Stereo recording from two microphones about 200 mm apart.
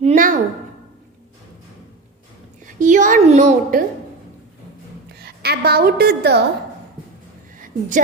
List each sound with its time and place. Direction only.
0.0 s a sound: 40° right (ahead or behind)
2.7 s a woman's voice: 40° right (ahead or behind)
5.2 s a woman's voice: 50° right (ahead or behind)
7.6 s a woman's voice: 40° right (ahead or behind)